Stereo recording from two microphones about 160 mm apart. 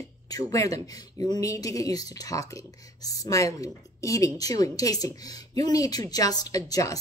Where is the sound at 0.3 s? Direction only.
20° left (ahead or behind).